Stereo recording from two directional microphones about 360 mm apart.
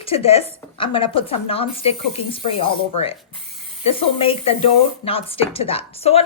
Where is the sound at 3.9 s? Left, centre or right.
Centre.